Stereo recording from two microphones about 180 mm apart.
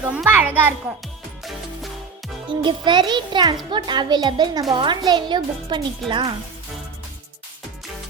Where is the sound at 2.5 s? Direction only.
25° right (ahead or behind).